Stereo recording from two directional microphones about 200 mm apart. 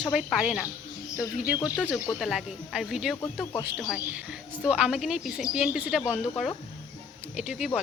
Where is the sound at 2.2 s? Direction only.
Centre (ahead or behind).